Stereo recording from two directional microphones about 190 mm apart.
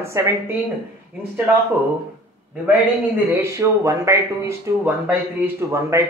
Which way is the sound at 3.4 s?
15° right (ahead or behind).